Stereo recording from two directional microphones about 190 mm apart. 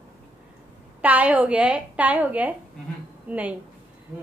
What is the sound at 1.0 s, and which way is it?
A woman's voice, 10° right (ahead or behind).